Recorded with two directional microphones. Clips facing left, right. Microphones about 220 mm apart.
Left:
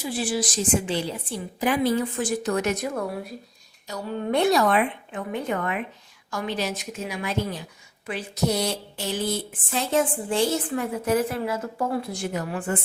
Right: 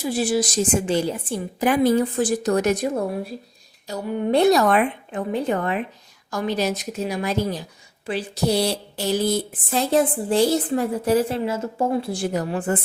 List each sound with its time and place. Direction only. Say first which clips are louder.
0.0 s speech: right 5 dB; 40° right (ahead or behind)
5.3 s speech: right 4 dB; 35° right (ahead or behind)